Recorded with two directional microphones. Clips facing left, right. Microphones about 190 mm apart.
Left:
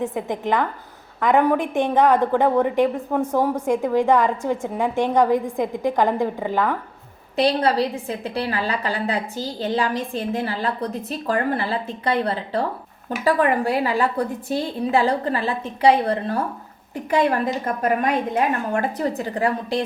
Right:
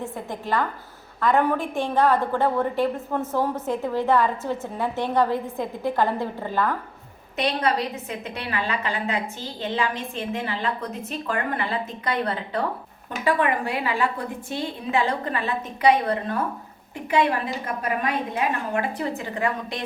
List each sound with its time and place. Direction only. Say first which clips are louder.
0.0 s a woman's voice: left 7 dB; 15° left (ahead or behind)
7.3 s a woman's voice: left 5 dB; 35° left (ahead or behind)
17.1 s a woman's voice: left 3 dB; 45° left (ahead or behind)